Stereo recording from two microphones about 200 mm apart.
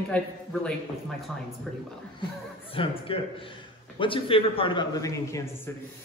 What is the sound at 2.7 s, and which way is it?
A man's voice, 25° left (ahead or behind).